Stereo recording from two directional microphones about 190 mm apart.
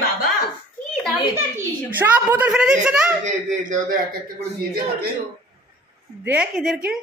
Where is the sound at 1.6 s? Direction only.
10° right (ahead or behind).